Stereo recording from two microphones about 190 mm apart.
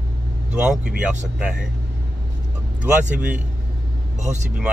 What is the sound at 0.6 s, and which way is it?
Speech, 5° right (ahead or behind).